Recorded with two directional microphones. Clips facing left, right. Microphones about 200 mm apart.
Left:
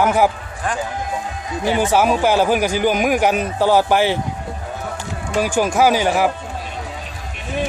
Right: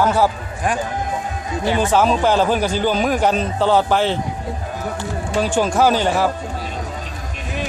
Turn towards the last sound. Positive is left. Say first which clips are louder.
# left 1 dB
turn(degrees=10)  # may be behind; listen again after turning